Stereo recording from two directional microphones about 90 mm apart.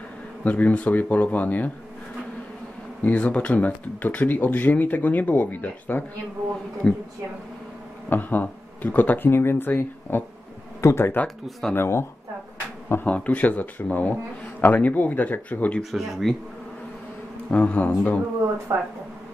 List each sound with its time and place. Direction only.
0.4 s speech: 15° left (ahead or behind)
3.0 s speech: 15° left (ahead or behind)
8.1 s speech: 20° left (ahead or behind)
12.8 s speech: 20° left (ahead or behind)
15.8 s speech: centre (ahead or behind)
17.5 s speech: 15° left (ahead or behind)
18.7 s speech: 25° right (ahead or behind)